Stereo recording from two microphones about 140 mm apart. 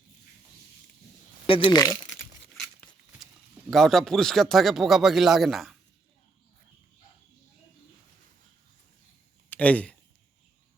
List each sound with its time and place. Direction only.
1.5 s speech: 40° left (ahead or behind)
3.7 s speech: centre (ahead or behind)
9.5 s speech: 10° left (ahead or behind)